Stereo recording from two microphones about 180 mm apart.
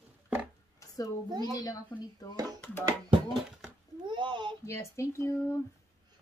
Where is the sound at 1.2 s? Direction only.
25° right (ahead or behind).